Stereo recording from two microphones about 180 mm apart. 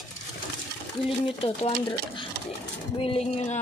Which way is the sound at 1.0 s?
30° left (ahead or behind).